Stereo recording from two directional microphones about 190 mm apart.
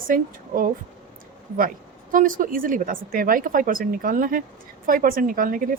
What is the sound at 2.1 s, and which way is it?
A woman's voice, 45° right (ahead or behind).